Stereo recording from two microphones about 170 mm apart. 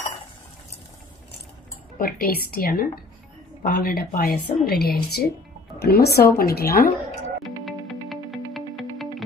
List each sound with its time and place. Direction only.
2.0 s a woman's voice: 60° left (ahead or behind)
7.4 s music: centre (ahead or behind)